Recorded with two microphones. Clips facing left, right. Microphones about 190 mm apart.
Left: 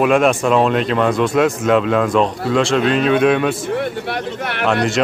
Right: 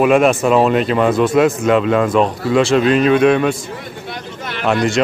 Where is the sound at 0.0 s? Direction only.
Centre (ahead or behind).